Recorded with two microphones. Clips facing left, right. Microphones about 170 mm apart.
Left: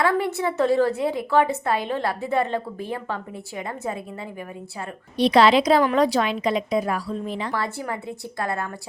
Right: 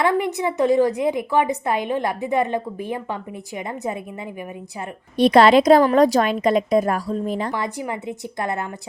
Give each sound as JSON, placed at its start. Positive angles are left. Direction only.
{"t": 0.0, "sound": "a woman's voice", "side_deg": -20}
{"t": 5.1, "sound": "a woman's voice", "side_deg": -50}
{"t": 7.5, "sound": "a woman's voice", "side_deg": -20}